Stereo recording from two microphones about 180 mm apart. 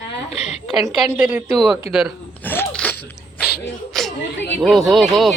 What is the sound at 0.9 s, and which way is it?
Speech, 5° right (ahead or behind).